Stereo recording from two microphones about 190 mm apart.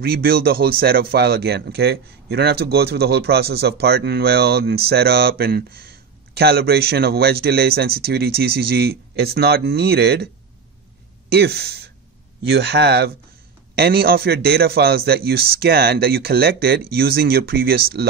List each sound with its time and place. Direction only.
0.0 s speech: 55° right (ahead or behind)